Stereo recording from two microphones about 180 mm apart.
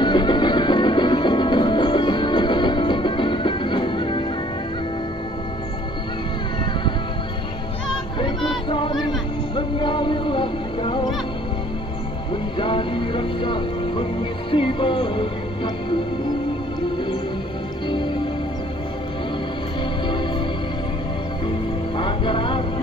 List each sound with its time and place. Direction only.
0.0 s music: 25° left (ahead or behind)
8.2 s a sound: 25° left (ahead or behind)
9.6 s music: 25° left (ahead or behind)
12.5 s music: 30° left (ahead or behind)
17.8 s music: 25° left (ahead or behind)
20.1 s music: 25° left (ahead or behind)
21.9 s music: 30° left (ahead or behind)